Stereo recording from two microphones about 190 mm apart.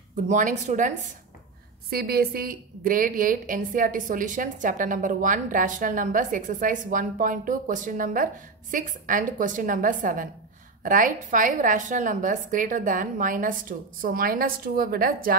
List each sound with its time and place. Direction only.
0.1 s a woman's voice: 40° right (ahead or behind)
1.9 s a woman's voice: 55° right (ahead or behind)